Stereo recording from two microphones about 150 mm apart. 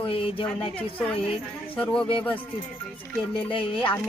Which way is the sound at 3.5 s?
35° left (ahead or behind).